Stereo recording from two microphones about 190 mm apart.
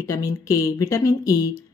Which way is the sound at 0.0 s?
15° left (ahead or behind).